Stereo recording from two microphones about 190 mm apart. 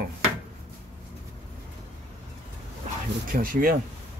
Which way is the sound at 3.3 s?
50° right (ahead or behind).